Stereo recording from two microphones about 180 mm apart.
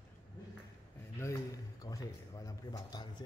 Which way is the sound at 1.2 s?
20° left (ahead or behind).